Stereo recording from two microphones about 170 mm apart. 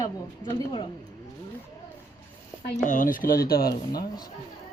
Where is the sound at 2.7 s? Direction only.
50° left (ahead or behind).